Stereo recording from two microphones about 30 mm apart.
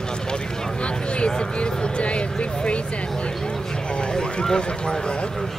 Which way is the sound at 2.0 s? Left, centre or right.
Left.